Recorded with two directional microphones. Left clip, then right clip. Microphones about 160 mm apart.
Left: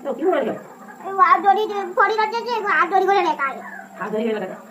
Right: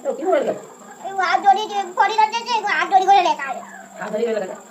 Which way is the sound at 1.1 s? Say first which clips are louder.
Left 1 dB; 15° right (ahead or behind).